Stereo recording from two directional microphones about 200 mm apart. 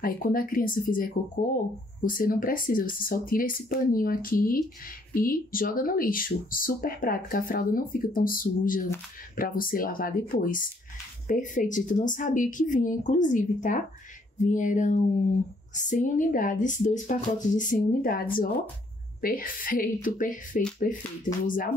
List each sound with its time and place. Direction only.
0.0 s speech: 45° left (ahead or behind)